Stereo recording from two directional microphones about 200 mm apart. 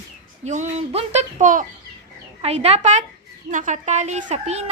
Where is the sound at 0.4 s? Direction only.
35° right (ahead or behind).